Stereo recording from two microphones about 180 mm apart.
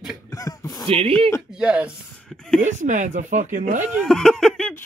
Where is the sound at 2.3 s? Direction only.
5° left (ahead or behind).